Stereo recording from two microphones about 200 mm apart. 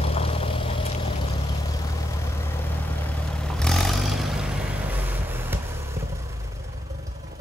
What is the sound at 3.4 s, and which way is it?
Vehicle, 5° left (ahead or behind).